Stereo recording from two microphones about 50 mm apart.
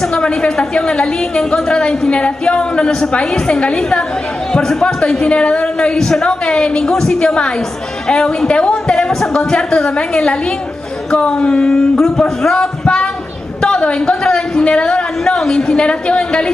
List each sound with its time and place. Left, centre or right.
0.1 s a woman's voice: centre
5.3 s a woman's voice: left